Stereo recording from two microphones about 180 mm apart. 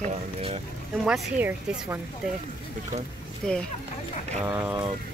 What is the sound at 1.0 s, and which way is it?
Speech, 5° right (ahead or behind).